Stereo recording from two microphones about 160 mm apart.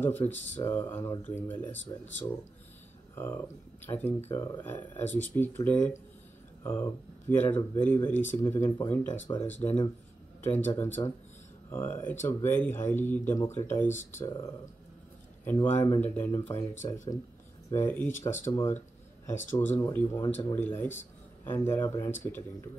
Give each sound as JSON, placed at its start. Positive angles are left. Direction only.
{"t": 0.0, "sound": "speech", "side_deg": 10}
{"t": 15.4, "sound": "speech", "side_deg": 15}